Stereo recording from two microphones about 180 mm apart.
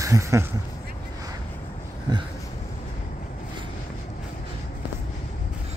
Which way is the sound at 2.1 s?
25° right (ahead or behind).